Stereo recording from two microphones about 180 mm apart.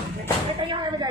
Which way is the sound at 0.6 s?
25° right (ahead or behind).